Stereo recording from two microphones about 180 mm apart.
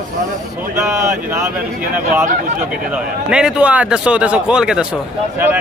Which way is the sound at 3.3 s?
5° right (ahead or behind).